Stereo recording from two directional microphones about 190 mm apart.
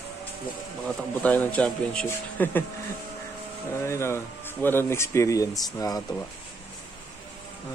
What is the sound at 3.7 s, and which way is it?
Speech, 15° left (ahead or behind).